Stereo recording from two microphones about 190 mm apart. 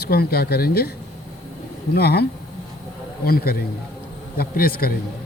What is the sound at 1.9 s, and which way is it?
Speech, 55° left (ahead or behind).